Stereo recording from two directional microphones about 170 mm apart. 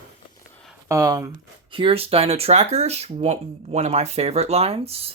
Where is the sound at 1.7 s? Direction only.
30° right (ahead or behind).